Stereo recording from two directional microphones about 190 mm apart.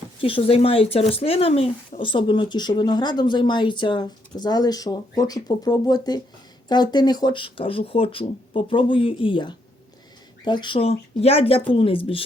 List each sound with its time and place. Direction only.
0.2 s speech: 30° left (ahead or behind)